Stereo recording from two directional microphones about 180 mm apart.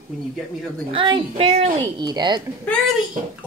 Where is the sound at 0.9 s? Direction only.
30° right (ahead or behind).